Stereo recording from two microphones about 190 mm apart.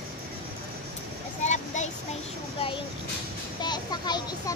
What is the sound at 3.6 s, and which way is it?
Speech, 20° left (ahead or behind).